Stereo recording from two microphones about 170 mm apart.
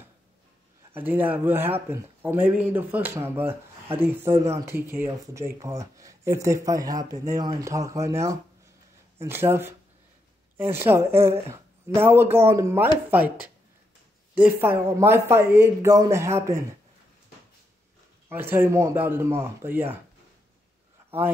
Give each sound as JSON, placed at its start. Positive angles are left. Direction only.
{"t": 0.9, "sound": "speech", "side_deg": -10}
{"t": 18.3, "sound": "speech", "side_deg": -10}